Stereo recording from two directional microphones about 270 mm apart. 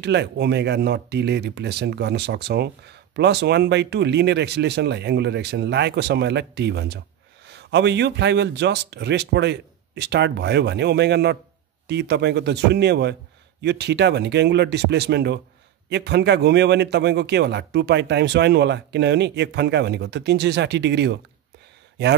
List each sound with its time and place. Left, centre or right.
0.0 s speech: right